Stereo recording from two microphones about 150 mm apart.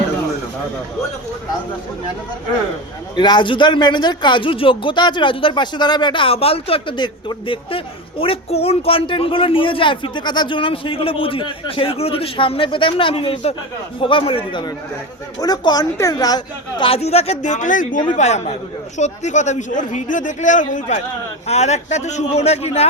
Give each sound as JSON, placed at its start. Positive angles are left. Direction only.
{"t": 3.2, "sound": "speech", "side_deg": 30}
{"t": 18.2, "sound": "a man's voice", "side_deg": 50}